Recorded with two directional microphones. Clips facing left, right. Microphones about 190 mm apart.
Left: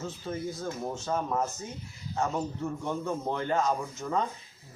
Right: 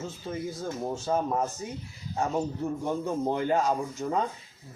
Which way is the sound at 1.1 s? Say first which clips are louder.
Right 4 dB; 20° right (ahead or behind).